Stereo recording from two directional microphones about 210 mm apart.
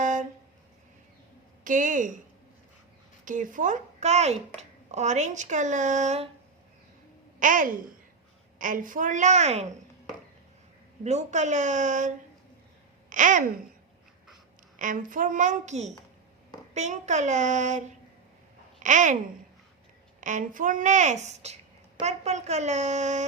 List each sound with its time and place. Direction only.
0.0 s a sound: 35° right (ahead or behind)
1.6 s a woman's voice: 40° right (ahead or behind)
3.2 s a woman's voice: 40° right (ahead or behind)
7.3 s a woman's voice: 40° right (ahead or behind)
11.0 s a woman's voice: 35° right (ahead or behind)
14.8 s a woman's voice: 40° right (ahead or behind)
20.2 s a woman's voice: 40° right (ahead or behind)